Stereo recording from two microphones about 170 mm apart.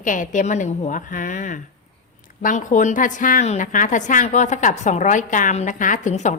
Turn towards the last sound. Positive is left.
turn(degrees=45)  # may be behind; listen again after turning